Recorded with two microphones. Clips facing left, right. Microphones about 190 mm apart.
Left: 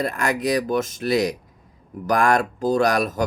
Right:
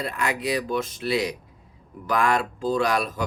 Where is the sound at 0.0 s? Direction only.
45° left (ahead or behind).